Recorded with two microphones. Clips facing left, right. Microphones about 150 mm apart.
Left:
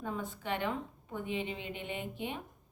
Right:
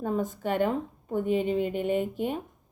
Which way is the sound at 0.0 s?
45° right (ahead or behind).